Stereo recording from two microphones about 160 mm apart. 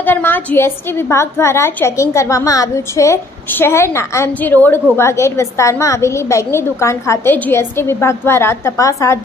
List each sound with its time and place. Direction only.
0.0 s a woman's voice: 10° left (ahead or behind)